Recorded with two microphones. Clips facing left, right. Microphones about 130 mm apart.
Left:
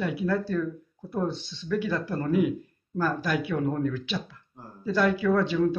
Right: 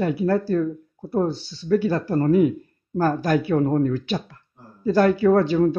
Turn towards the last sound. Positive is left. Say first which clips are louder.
# right 6 dB
turn(degrees=-45)  # may be behind; listen again after turning